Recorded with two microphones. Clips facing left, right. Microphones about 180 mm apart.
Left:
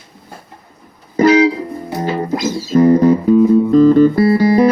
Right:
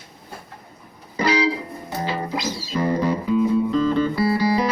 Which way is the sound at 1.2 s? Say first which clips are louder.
Left 10 dB; 45° left (ahead or behind).